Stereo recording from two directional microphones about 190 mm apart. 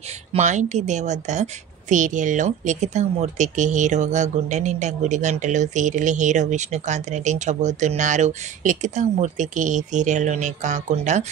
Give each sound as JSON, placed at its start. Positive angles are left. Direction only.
{"t": 0.3, "sound": "a woman's voice", "side_deg": -40}